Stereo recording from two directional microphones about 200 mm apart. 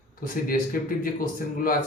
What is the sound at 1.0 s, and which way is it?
Speech, 45° left (ahead or behind).